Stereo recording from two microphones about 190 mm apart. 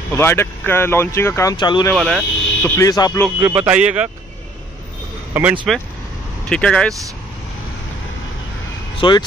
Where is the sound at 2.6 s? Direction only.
15° left (ahead or behind).